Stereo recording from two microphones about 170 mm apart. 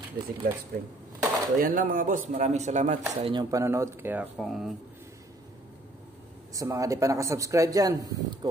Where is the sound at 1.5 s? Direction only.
55° right (ahead or behind).